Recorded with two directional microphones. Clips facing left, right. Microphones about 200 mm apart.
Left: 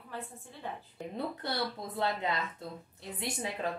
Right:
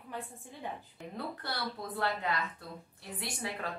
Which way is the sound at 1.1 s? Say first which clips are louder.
Left 4 dB; 20° left (ahead or behind).